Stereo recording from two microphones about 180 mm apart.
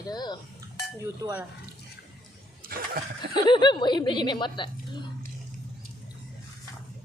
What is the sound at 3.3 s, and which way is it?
Speech, 25° left (ahead or behind).